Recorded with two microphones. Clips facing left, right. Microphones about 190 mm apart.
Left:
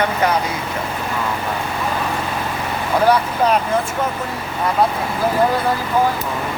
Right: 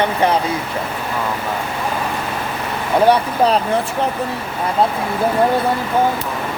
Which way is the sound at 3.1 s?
30° right (ahead or behind).